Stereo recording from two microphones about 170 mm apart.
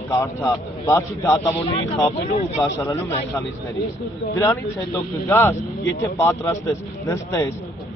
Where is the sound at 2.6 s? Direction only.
20° left (ahead or behind).